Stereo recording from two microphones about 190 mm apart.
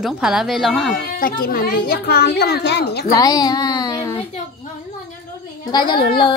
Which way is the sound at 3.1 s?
20° left (ahead or behind).